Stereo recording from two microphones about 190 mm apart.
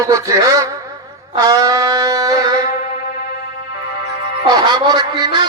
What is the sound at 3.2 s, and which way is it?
Music, 55° left (ahead or behind).